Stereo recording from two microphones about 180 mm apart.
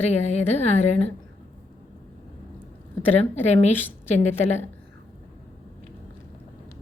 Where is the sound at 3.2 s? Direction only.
35° left (ahead or behind).